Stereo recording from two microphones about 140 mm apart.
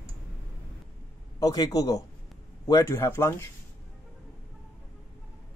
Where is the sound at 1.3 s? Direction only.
25° left (ahead or behind).